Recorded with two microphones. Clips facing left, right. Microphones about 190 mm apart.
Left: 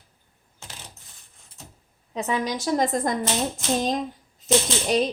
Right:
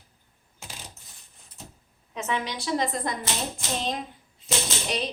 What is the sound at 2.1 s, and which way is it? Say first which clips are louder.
A woman's voice: left 4 dB; 35° left (ahead or behind).